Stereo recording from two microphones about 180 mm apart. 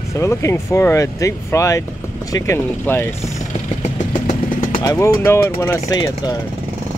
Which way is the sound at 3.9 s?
45° left (ahead or behind).